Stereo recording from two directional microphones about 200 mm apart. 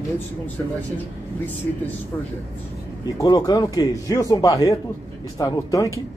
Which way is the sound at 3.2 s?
20° left (ahead or behind).